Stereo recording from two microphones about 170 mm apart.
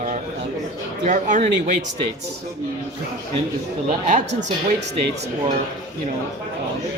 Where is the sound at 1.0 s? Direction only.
45° right (ahead or behind).